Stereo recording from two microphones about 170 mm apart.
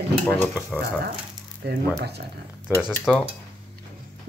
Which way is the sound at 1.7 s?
75° right (ahead or behind).